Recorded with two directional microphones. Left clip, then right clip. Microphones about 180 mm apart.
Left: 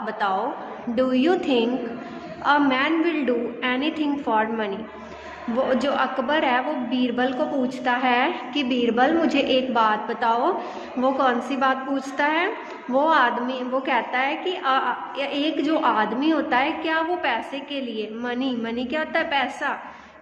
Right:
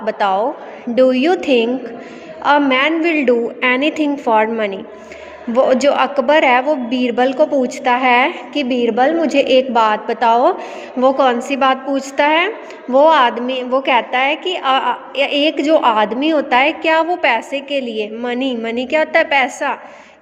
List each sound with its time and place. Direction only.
0.0 s a woman's voice: 40° right (ahead or behind)